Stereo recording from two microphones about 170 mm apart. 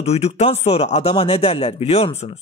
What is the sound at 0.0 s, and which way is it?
A man's voice, 40° left (ahead or behind).